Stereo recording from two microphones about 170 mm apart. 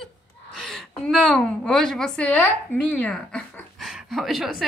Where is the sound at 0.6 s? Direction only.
5° left (ahead or behind).